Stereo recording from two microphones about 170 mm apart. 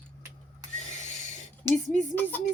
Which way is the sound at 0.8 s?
45° left (ahead or behind).